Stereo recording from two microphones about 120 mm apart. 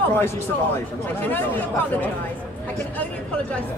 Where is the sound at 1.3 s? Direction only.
15° left (ahead or behind).